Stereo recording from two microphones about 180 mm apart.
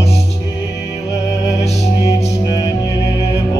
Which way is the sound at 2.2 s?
25° left (ahead or behind).